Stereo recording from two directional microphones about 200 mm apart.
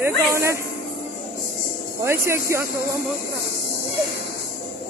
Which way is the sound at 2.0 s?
15° right (ahead or behind).